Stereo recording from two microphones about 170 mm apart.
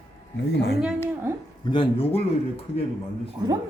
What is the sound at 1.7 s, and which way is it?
Speech, 30° left (ahead or behind).